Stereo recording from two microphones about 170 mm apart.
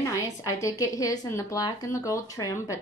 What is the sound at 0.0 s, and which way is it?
A woman's voice, 20° left (ahead or behind).